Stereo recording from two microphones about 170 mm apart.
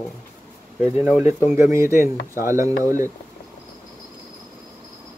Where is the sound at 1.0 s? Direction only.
10° right (ahead or behind).